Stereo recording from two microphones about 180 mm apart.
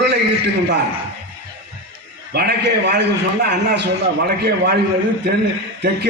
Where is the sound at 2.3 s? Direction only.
65° right (ahead or behind).